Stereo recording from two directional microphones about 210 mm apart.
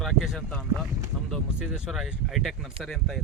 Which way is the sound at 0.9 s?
Centre (ahead or behind).